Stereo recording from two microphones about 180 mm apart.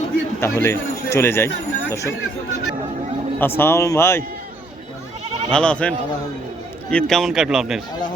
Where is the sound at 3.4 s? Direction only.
15° left (ahead or behind).